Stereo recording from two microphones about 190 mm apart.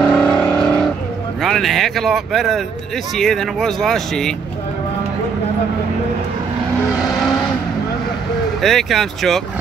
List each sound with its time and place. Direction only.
0.1 s vehicle: 5° left (ahead or behind)
1.4 s speech: centre (ahead or behind)
8.5 s speech: centre (ahead or behind)